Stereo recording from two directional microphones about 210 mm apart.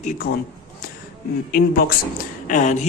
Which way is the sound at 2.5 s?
35° left (ahead or behind).